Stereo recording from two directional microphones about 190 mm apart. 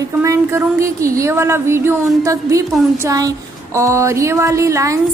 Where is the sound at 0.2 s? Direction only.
15° right (ahead or behind).